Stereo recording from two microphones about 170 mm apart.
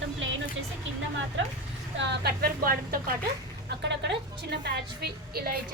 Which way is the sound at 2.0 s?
85° right.